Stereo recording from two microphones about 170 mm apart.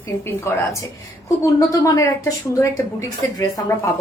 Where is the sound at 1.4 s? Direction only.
20° left (ahead or behind).